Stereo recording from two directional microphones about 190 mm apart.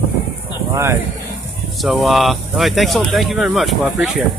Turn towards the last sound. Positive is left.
turn(degrees=0)  # may be behind; listen again after turning